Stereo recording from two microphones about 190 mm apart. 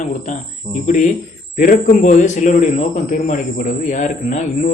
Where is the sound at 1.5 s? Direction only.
45° left (ahead or behind).